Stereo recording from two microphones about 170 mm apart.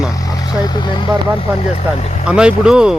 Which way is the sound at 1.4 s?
40° left (ahead or behind).